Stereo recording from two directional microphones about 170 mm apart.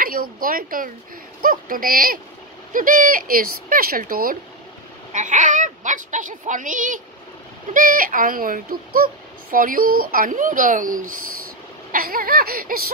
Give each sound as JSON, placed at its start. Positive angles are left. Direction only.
{"t": 0.0, "sound": "a woman's voice", "side_deg": -55}
{"t": 5.1, "sound": "speech", "side_deg": -45}